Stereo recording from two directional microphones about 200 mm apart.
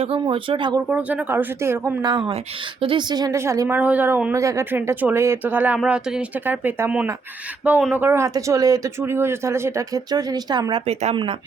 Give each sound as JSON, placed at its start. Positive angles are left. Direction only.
{"t": 0.0, "sound": "speech", "side_deg": -25}
{"t": 0.9, "sound": "speech", "side_deg": -5}